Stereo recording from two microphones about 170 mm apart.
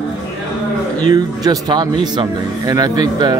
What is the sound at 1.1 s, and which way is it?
Speech, 25° right (ahead or behind).